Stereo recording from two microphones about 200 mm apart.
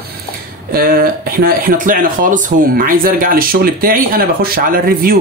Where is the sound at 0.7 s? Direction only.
50° right (ahead or behind).